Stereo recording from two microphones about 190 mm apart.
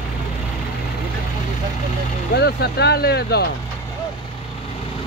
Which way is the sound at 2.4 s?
60° left (ahead or behind).